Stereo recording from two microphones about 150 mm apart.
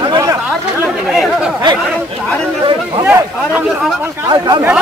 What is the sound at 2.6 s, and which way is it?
Chatter, 35° right (ahead or behind).